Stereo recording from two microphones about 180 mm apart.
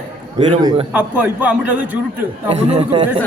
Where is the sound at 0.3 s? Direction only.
30° right (ahead or behind).